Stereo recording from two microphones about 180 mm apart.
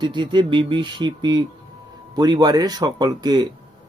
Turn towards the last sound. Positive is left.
turn(degrees=-25)  # may be behind; listen again after turning